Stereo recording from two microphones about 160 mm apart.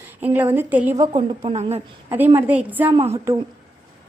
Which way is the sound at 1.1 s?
35° right (ahead or behind).